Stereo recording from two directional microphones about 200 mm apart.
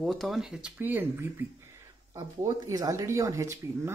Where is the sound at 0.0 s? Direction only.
Centre (ahead or behind).